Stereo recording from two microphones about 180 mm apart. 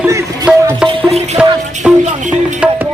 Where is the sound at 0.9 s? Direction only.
35° right (ahead or behind).